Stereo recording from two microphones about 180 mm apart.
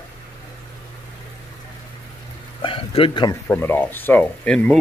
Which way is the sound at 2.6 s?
30° left (ahead or behind).